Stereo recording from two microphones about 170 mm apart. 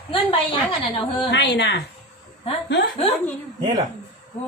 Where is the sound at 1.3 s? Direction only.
90° left.